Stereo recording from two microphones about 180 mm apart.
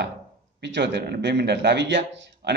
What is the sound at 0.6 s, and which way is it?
A man's voice, 75° right (ahead or behind).